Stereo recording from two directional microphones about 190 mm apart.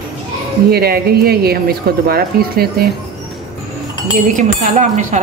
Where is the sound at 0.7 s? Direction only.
55° right (ahead or behind).